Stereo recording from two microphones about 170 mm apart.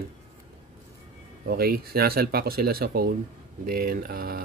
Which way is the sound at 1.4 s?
65° right (ahead or behind).